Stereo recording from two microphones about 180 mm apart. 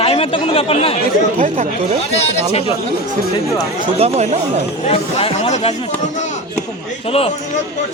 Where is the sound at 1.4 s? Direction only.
40° right (ahead or behind).